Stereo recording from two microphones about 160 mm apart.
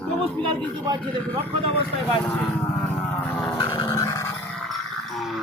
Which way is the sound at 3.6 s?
20° left (ahead or behind).